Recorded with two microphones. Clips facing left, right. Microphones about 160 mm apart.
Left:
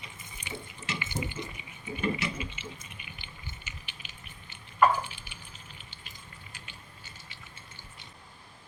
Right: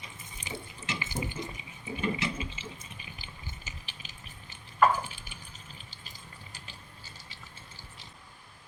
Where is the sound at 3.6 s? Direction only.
35° right (ahead or behind).